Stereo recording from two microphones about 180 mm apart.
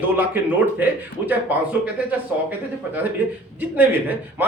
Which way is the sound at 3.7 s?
10° right (ahead or behind).